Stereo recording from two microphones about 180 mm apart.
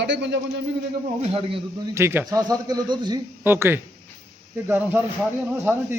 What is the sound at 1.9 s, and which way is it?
A man's voice, 15° right (ahead or behind).